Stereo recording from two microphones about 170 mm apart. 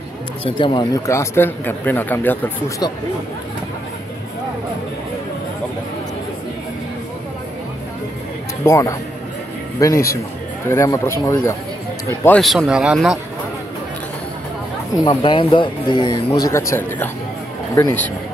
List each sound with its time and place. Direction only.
0.5 s speech: 30° left (ahead or behind); by 2.3 s 10° left (ahead or behind)
8.6 s speech: 15° left (ahead or behind)
12.4 s speech: centre (ahead or behind)
15.0 s speech: 25° left (ahead or behind)